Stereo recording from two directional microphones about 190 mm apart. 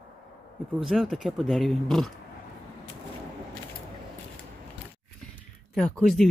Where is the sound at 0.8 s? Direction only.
Centre (ahead or behind).